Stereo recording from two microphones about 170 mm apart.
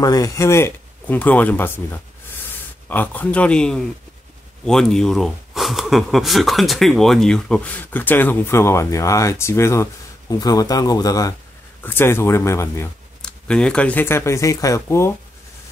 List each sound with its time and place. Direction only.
0.0 s speech: 20° left (ahead or behind)
2.9 s speech: 10° left (ahead or behind)
13.2 s speech: 5° left (ahead or behind)